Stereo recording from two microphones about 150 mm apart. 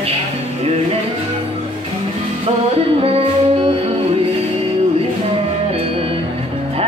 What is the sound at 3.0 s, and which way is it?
Music, 40° right (ahead or behind).